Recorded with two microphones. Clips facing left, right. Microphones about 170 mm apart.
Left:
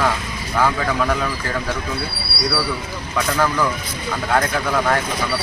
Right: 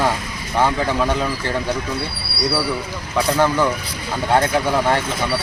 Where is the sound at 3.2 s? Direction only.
25° right (ahead or behind).